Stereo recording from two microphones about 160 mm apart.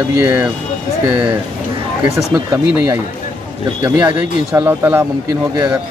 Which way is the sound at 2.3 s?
20° right (ahead or behind).